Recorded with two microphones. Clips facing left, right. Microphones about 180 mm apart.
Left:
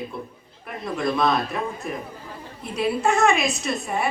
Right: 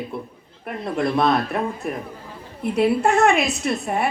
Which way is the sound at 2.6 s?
60° right (ahead or behind).